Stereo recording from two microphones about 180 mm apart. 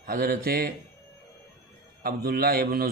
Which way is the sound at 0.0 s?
50° right (ahead or behind).